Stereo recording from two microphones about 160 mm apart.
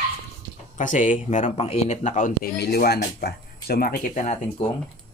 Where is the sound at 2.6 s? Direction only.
90° left.